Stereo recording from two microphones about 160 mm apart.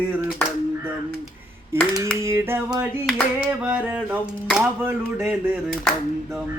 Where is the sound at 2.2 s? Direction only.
15° right (ahead or behind).